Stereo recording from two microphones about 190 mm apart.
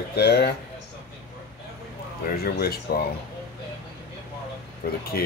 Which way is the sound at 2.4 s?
55° left (ahead or behind).